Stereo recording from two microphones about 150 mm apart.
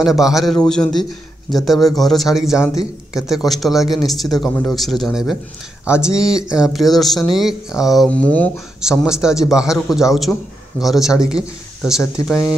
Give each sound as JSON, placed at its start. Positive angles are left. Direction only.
{"t": 0.0, "sound": "speech", "side_deg": 0}
{"t": 2.6, "sound": "a man's voice", "side_deg": 20}
{"t": 3.3, "sound": "speech", "side_deg": 0}
{"t": 8.8, "sound": "speech", "side_deg": -5}